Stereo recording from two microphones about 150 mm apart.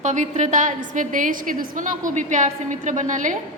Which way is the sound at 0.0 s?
55° right (ahead or behind).